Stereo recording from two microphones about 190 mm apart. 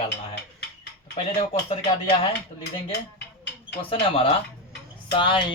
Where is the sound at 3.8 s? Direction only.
30° left (ahead or behind).